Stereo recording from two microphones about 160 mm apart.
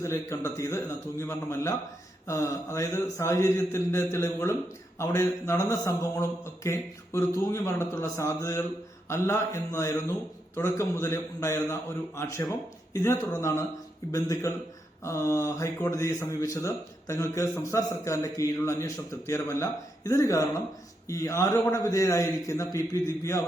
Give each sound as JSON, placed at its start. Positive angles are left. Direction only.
{"t": 0.0, "sound": "a man's voice", "side_deg": 15}